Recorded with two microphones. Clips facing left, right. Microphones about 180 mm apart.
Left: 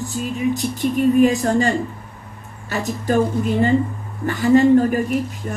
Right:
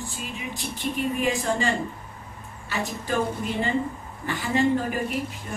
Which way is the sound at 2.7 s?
45° left (ahead or behind).